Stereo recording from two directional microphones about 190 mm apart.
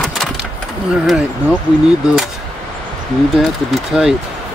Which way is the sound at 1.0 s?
5° right (ahead or behind).